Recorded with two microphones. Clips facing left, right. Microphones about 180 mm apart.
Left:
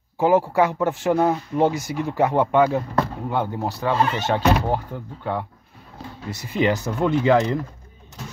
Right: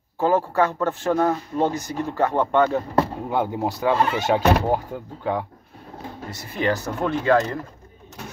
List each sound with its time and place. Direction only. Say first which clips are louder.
0.2 s speech: left 2 dB; 15° left (ahead or behind)
3.3 s speech: right 1 dB; 15° right (ahead or behind)
3.9 s speech: even; centre (ahead or behind)
4.2 s speech: right 1 dB; 10° right (ahead or behind)
6.5 s speech: left 2 dB; 20° left (ahead or behind)